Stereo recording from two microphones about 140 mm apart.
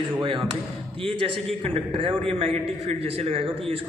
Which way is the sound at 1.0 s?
40° right (ahead or behind).